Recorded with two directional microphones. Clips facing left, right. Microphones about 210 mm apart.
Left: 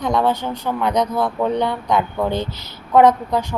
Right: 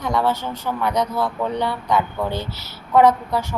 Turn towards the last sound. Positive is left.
turn(degrees=15)  # may be behind; listen again after turning